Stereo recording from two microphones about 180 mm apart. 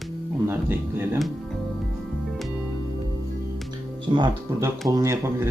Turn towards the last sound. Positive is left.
turn(degrees=-15)  # may be behind; listen again after turning